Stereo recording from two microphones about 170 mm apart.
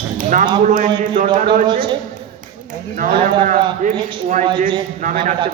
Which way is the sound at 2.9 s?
50° right (ahead or behind).